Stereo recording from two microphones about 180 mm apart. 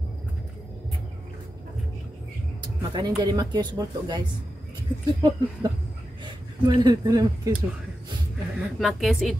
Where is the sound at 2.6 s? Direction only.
25° right (ahead or behind).